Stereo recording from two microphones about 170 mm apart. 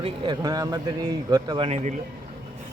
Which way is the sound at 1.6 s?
40° right (ahead or behind).